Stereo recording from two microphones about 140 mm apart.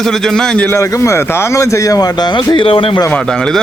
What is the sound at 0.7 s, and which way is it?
Speech, 20° left (ahead or behind).